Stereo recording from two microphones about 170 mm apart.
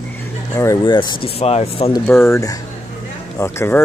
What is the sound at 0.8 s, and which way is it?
Speech, 25° left (ahead or behind).